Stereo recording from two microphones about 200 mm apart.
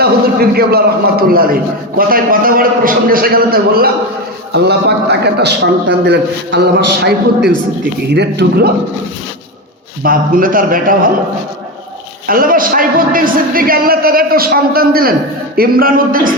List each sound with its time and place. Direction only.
0.0 s a man's voice: 50° right (ahead or behind)
10.0 s a man's voice: 45° right (ahead or behind)
12.3 s a man's voice: 45° right (ahead or behind)